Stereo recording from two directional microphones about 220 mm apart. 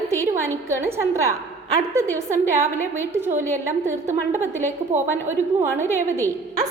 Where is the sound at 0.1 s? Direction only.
10° right (ahead or behind).